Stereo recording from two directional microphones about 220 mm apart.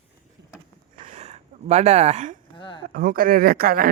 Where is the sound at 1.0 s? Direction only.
30° right (ahead or behind).